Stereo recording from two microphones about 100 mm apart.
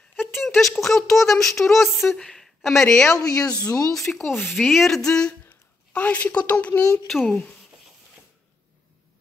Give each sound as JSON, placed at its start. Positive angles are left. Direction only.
{"t": 0.1, "sound": "speech", "side_deg": -5}
{"t": 3.1, "sound": "speech", "side_deg": 35}
{"t": 3.6, "sound": "speech", "side_deg": 5}
{"t": 7.1, "sound": "speech", "side_deg": 5}